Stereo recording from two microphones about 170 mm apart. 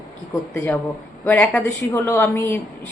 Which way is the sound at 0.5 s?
10° left (ahead or behind).